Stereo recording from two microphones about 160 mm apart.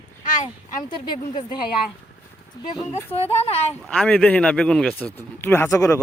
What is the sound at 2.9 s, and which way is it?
Speech, 40° left (ahead or behind).